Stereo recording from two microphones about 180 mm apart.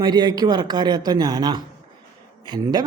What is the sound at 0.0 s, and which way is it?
Speech, 25° right (ahead or behind).